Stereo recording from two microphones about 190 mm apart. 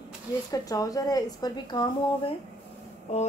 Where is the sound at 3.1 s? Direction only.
35° left (ahead or behind).